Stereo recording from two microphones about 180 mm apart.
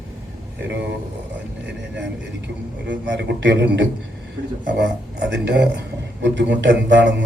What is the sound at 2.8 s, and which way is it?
Speech, 80° right.